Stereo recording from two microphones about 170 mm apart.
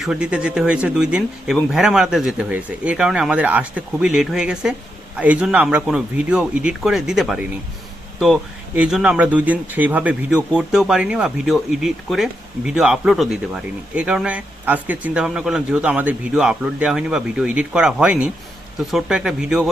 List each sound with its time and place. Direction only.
0.0 s speech: 5° right (ahead or behind)
8.8 s speech: 5° right (ahead or behind)